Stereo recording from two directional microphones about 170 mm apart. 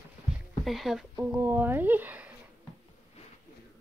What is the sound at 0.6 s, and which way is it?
Speech, centre (ahead or behind).